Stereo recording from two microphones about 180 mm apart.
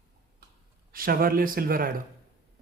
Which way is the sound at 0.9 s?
55° right (ahead or behind).